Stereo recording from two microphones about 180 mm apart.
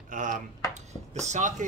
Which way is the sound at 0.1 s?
45° right (ahead or behind).